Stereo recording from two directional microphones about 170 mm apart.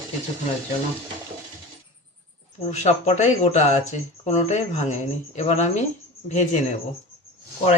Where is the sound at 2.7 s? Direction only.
40° left (ahead or behind).